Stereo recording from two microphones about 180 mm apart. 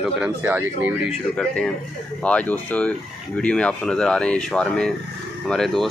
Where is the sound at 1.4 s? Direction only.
5° left (ahead or behind).